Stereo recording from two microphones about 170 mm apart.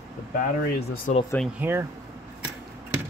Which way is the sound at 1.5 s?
15° right (ahead or behind).